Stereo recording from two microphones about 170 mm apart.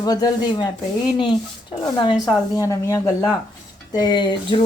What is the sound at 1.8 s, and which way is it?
Speech, 20° left (ahead or behind).